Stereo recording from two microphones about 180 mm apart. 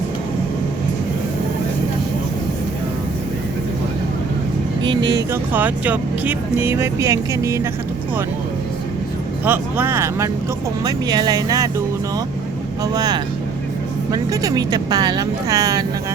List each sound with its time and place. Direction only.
4.8 s speech: 25° right (ahead or behind)
5.3 s speech: 10° right (ahead or behind)
9.5 s speech: 10° right (ahead or behind)
12.8 s speech: 20° right (ahead or behind)